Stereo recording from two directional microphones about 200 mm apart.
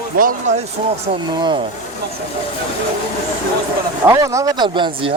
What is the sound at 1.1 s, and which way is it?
Speech, 25° right (ahead or behind).